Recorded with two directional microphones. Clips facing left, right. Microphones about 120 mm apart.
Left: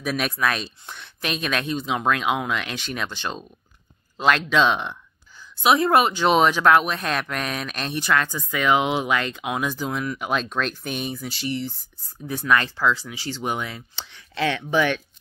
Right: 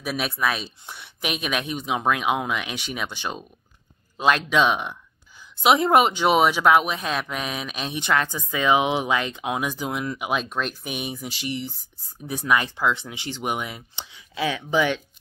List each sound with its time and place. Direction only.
0.0 s speech: 5° right (ahead or behind); by 6.2 s 20° right (ahead or behind)
6.2 s speech: 10° right (ahead or behind)
8.0 s speech: 20° right (ahead or behind)